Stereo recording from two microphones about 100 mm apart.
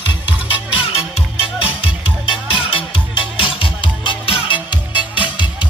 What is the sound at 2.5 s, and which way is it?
Music, 60° left (ahead or behind).